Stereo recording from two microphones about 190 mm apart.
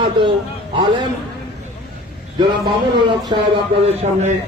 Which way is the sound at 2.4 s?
25° right (ahead or behind).